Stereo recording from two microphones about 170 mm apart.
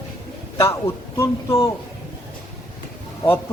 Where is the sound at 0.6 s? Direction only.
15° left (ahead or behind).